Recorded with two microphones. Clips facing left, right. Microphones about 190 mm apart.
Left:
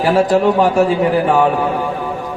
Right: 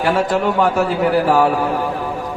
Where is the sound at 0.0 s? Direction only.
20° left (ahead or behind).